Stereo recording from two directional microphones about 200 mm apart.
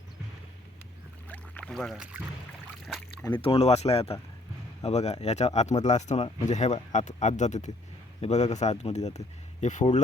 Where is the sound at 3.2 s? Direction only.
25° left (ahead or behind).